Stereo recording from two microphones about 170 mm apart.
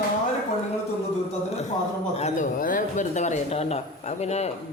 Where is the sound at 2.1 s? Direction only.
45° left (ahead or behind).